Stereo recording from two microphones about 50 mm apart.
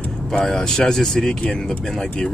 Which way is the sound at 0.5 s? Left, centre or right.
Centre.